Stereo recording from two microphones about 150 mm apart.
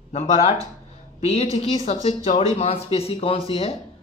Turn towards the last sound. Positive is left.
turn(degrees=40)  # may be behind; listen again after turning